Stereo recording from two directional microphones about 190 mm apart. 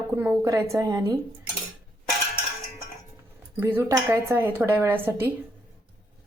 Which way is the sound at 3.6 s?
10° right (ahead or behind).